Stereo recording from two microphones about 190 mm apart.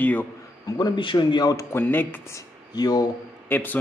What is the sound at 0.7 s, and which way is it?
A man's voice, 25° left (ahead or behind).